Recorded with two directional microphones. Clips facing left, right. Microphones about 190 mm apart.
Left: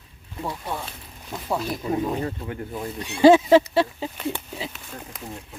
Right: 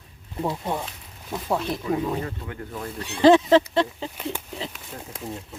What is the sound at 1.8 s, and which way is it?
Speech, 25° left (ahead or behind).